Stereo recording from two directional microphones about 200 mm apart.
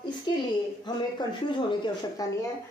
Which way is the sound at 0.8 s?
20° left (ahead or behind).